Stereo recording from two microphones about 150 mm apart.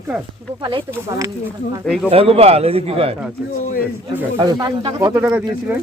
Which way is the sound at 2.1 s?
40° right (ahead or behind).